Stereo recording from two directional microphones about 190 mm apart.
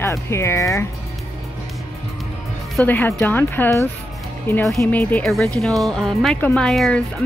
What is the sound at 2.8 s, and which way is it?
Speech, 10° left (ahead or behind).